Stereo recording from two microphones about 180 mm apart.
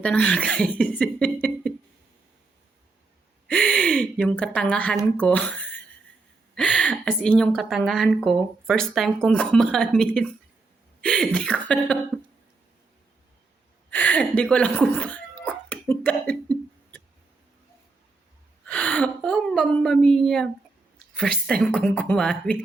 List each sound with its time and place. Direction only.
0.0 s speech: 5° left (ahead or behind)
3.4 s a woman's voice: 5° left (ahead or behind)
13.9 s a woman's voice: 10° left (ahead or behind)
14.5 s cough: 5° left (ahead or behind)
18.6 s a woman's voice: 5° left (ahead or behind)